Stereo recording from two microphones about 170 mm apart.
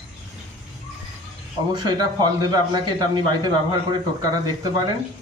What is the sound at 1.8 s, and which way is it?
A man's voice, 25° right (ahead or behind).